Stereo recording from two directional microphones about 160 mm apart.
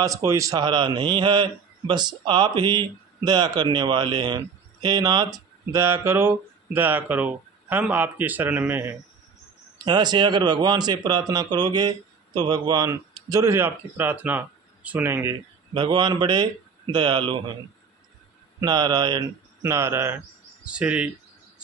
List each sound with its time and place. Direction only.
0.0 s a man's voice: 20° right (ahead or behind)
9.8 s a man's voice: 25° right (ahead or behind)
15.7 s a man's voice: 30° right (ahead or behind)
18.6 s a man's voice: 25° right (ahead or behind); by 21.1 s 5° right (ahead or behind)